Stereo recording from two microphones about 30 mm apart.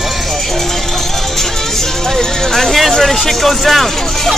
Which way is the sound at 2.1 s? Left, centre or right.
Centre.